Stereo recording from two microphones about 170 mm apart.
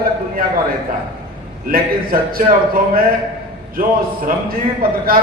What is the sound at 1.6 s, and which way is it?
Speech, 60° right (ahead or behind).